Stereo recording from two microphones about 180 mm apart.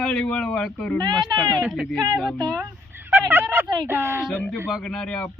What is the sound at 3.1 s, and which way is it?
Speech, 10° right (ahead or behind).